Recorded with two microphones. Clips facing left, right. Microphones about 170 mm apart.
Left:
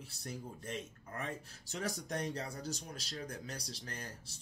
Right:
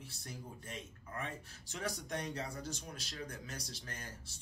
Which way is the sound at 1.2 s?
40° left (ahead or behind).